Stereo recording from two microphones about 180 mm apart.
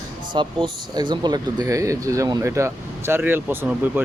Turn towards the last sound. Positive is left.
turn(degrees=-10)  # may be behind; listen again after turning